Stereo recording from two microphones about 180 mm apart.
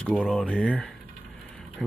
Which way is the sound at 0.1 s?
5° right (ahead or behind).